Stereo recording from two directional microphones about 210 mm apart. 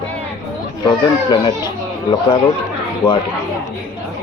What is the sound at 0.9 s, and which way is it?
Speech, 20° left (ahead or behind).